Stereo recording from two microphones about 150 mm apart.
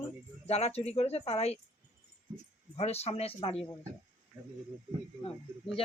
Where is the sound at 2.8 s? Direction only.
45° left (ahead or behind).